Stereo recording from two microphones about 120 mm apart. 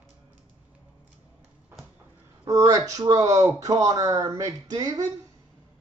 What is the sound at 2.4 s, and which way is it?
Speech, 30° right (ahead or behind).